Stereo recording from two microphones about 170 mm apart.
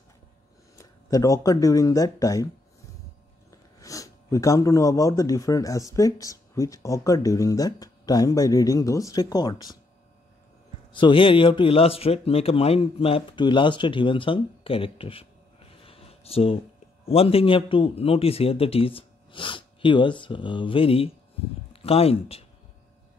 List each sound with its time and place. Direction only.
0.7 s speech: 20° left (ahead or behind)
3.8 s speech: 20° left (ahead or behind)
10.9 s speech: 30° left (ahead or behind)
15.8 s a sound: 35° left (ahead or behind)
17.0 s speech: 35° left (ahead or behind)